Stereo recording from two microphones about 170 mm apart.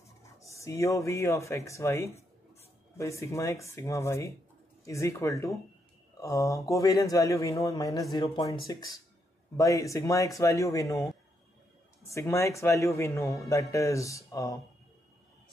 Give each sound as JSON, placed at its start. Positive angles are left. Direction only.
{"t": 0.2, "sound": "a man's voice", "side_deg": 15}
{"t": 12.1, "sound": "a man's voice", "side_deg": 15}